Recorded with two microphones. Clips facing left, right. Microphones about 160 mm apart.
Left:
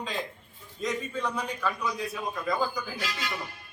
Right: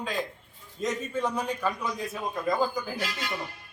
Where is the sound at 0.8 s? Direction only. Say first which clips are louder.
Right 2 dB; 20° right (ahead or behind).